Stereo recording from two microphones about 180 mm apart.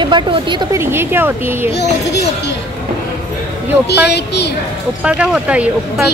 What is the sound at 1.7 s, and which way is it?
Speech, 70° left (ahead or behind).